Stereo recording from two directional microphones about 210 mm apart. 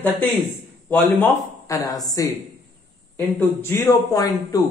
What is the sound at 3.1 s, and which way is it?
A man's voice, 15° left (ahead or behind).